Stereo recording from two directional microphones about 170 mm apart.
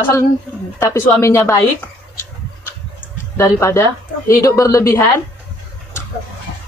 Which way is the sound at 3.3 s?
15° left (ahead or behind).